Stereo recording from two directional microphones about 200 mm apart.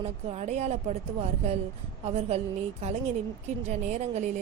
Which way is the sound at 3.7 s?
35° right (ahead or behind).